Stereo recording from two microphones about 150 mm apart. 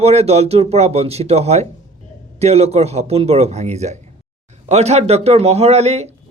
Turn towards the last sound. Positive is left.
turn(degrees=-45)  # may be behind; listen again after turning